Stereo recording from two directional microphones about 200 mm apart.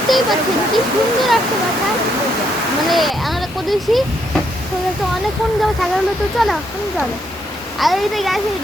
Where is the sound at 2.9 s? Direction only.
Centre (ahead or behind).